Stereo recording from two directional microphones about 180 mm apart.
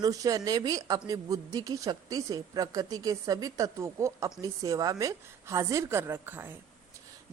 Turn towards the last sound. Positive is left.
turn(degrees=-10)  # may be behind; listen again after turning